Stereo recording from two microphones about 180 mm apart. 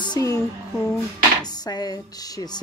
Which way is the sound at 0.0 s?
20° left (ahead or behind).